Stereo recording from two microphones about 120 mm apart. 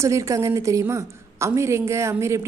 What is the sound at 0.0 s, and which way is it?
A woman's voice, 25° right (ahead or behind).